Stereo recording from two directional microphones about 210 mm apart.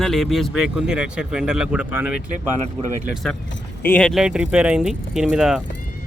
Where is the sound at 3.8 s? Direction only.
5° left (ahead or behind).